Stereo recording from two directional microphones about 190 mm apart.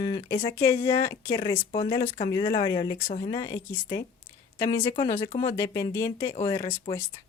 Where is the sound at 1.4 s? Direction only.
25° left (ahead or behind).